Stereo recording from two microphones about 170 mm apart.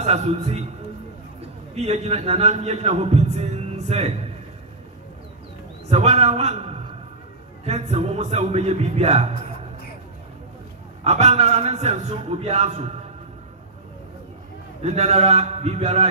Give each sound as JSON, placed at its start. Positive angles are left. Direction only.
{"t": 0.0, "sound": "a man's voice", "side_deg": -40}
{"t": 5.9, "sound": "a man's voice", "side_deg": -40}
{"t": 11.1, "sound": "a man's voice", "side_deg": -40}
{"t": 14.8, "sound": "a man's voice", "side_deg": -40}